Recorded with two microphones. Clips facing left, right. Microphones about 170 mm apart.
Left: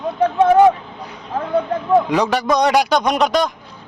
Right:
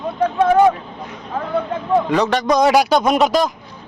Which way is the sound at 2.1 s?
10° left (ahead or behind).